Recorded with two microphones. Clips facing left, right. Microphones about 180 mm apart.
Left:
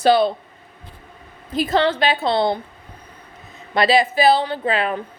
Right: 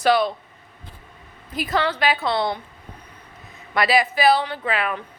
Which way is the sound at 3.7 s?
25° left (ahead or behind).